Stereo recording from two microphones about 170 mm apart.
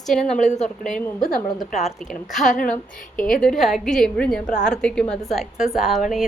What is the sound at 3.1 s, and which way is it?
Speech, 55° left (ahead or behind).